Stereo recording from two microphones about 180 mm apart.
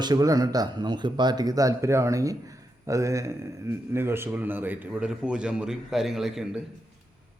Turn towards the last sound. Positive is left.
turn(degrees=0)  # may be behind; listen again after turning